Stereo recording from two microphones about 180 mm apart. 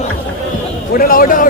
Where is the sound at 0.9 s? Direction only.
55° left (ahead or behind).